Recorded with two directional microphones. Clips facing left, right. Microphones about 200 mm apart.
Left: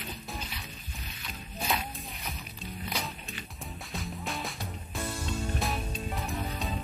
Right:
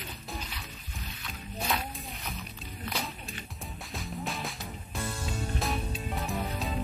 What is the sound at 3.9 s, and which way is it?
Music, centre (ahead or behind).